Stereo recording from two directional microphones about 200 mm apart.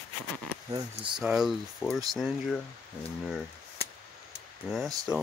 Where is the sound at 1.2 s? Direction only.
Centre (ahead or behind).